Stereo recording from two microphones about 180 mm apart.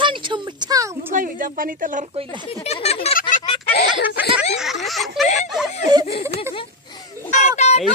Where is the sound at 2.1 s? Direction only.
30° right (ahead or behind).